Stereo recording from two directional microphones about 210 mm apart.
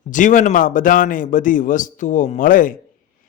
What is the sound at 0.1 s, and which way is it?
Speech, 35° left (ahead or behind).